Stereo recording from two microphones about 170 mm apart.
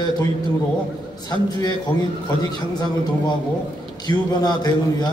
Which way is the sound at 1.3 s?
25° left (ahead or behind).